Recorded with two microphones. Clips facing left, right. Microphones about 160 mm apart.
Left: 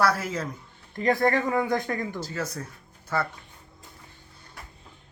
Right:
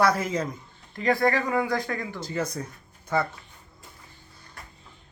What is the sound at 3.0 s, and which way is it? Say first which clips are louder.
Speech: right 2 dB; 10° right (ahead or behind).